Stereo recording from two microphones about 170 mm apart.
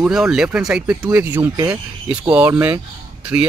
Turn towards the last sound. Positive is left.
turn(degrees=-10)  # may be behind; listen again after turning